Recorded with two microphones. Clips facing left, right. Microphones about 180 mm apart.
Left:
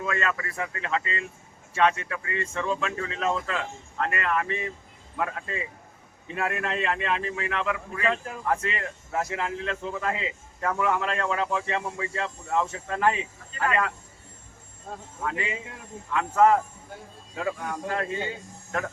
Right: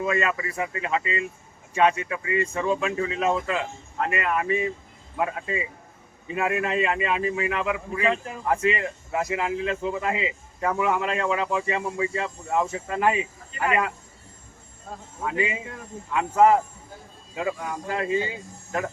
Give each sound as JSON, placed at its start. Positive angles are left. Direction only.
{"t": 0.0, "sound": "a man's voice", "side_deg": -15}
{"t": 15.2, "sound": "a man's voice", "side_deg": -15}